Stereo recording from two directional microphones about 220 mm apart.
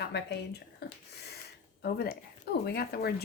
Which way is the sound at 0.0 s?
50° left (ahead or behind).